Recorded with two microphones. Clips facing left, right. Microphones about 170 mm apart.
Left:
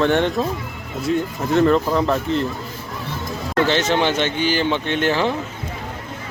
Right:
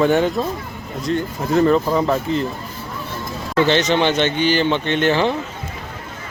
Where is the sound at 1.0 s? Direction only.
5° left (ahead or behind).